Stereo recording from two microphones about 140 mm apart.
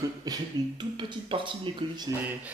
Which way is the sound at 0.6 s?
30° right (ahead or behind).